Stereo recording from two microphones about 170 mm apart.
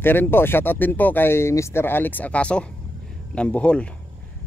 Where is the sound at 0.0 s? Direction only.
10° left (ahead or behind).